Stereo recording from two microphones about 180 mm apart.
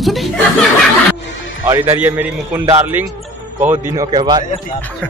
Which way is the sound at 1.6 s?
15° right (ahead or behind).